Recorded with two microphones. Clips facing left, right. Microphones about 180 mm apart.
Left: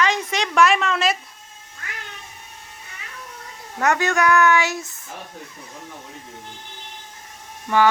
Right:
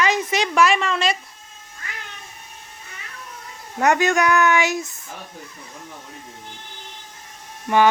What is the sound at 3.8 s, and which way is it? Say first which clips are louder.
A child's voice: right 2 dB; 15° right (ahead or behind).